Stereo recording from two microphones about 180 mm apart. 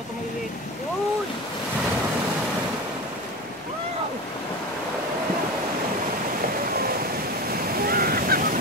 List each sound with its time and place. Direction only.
7.8 s waves: 55° right (ahead or behind)